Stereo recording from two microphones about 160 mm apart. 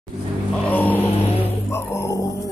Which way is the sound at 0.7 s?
10° left (ahead or behind).